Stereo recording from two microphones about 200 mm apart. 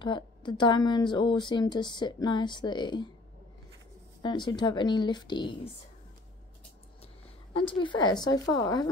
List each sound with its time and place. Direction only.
0.0 s a woman's voice: 20° left (ahead or behind)
4.2 s a woman's voice: 20° left (ahead or behind)
7.5 s a woman's voice: 25° left (ahead or behind)